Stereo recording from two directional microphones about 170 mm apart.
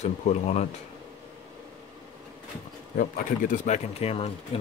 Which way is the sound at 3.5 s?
45° left (ahead or behind).